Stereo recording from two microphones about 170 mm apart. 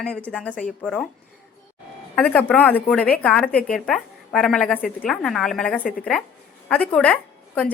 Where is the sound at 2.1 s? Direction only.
5° left (ahead or behind).